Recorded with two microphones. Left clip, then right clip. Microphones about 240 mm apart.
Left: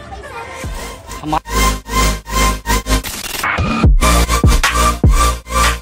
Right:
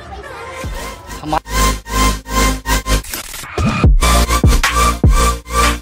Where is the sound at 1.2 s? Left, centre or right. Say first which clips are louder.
Even; centre.